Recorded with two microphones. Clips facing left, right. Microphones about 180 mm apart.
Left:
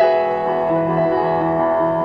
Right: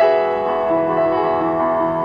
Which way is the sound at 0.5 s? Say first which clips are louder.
Even; 40° left (ahead or behind).